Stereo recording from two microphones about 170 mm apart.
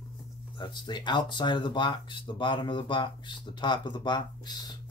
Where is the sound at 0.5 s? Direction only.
25° left (ahead or behind).